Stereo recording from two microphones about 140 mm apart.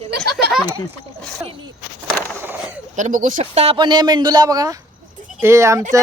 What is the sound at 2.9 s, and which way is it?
Speech, 65° right (ahead or behind).